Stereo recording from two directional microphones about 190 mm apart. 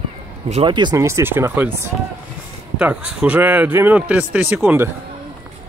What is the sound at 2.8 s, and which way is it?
Speech, 5° right (ahead or behind).